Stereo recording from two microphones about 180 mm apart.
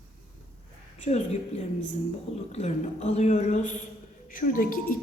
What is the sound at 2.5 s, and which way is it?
A man's voice, 35° left (ahead or behind).